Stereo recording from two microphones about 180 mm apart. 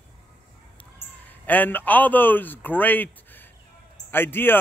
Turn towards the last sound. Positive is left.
turn(degrees=10)  # may be behind; listen again after turning